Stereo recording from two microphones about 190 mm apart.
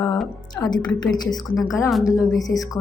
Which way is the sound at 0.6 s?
10° left (ahead or behind).